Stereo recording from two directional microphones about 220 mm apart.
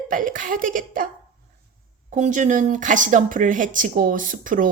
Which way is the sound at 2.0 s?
35° right (ahead or behind).